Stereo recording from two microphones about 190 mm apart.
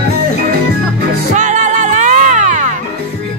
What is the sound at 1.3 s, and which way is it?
Music, 40° right (ahead or behind).